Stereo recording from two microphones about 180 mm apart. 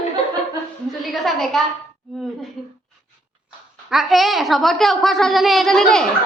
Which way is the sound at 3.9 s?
Centre (ahead or behind).